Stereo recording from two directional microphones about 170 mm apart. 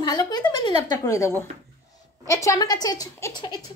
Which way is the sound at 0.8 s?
20° left (ahead or behind).